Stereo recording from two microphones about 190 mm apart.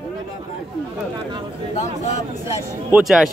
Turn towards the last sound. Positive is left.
turn(degrees=0)  # may be behind; listen again after turning